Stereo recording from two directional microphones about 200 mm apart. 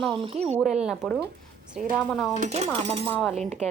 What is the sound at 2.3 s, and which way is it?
Speech, 35° right (ahead or behind).